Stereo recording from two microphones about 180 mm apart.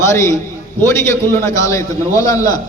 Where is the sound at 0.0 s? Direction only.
15° left (ahead or behind).